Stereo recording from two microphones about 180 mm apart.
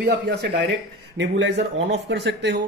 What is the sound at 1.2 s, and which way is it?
Speech, 85° right.